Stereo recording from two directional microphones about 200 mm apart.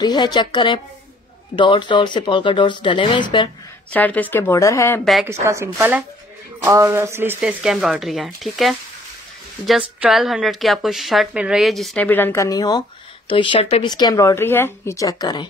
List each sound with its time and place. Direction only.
0.0 s speech: 20° left (ahead or behind)
3.9 s a woman's voice: 10° left (ahead or behind)
5.0 s a woman's voice: centre (ahead or behind)
5.3 s a woman's voice: 15° right (ahead or behind); by 15.4 s 20° left (ahead or behind)